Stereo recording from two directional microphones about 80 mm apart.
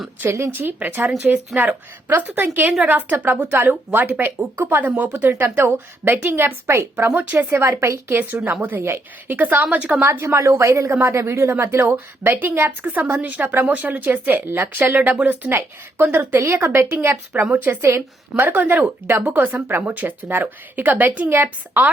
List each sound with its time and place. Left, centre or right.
0.2 s a woman's voice: right
0.5 s speech: right
10.1 s a woman's voice: right